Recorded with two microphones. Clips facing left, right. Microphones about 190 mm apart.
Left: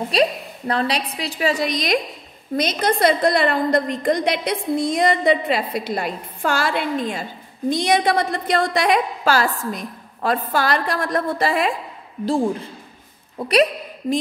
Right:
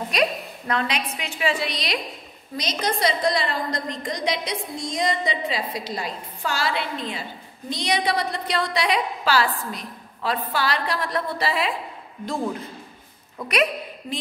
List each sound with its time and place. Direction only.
0.1 s a woman's voice: 30° left (ahead or behind)
2.5 s a woman's voice: 55° left (ahead or behind)
13.4 s a woman's voice: 35° left (ahead or behind)